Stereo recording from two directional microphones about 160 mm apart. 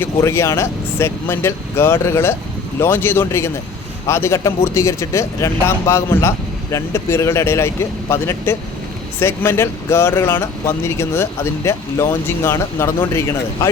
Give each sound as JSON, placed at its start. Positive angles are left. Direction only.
{"t": 0.0, "sound": "speech", "side_deg": 15}